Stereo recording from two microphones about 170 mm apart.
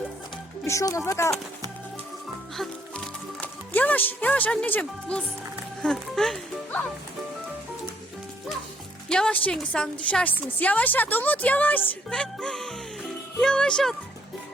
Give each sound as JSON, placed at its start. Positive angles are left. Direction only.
{"t": 0.6, "sound": "speech", "side_deg": 20}
{"t": 2.6, "sound": "speech", "side_deg": 5}
{"t": 9.0, "sound": "a woman's voice", "side_deg": 5}